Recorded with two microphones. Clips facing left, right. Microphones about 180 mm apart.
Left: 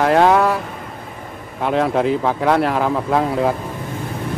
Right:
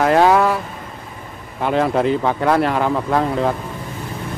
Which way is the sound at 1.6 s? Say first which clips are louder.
Even; centre (ahead or behind).